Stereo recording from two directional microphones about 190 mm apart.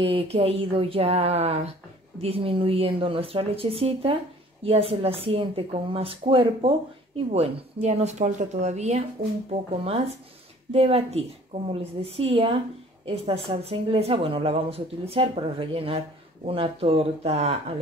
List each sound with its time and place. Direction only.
0.0 s a woman's voice: 30° right (ahead or behind)